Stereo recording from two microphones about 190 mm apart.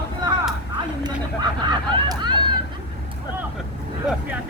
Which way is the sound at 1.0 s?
20° right (ahead or behind).